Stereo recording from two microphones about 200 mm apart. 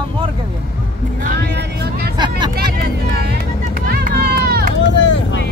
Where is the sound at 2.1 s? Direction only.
20° right (ahead or behind).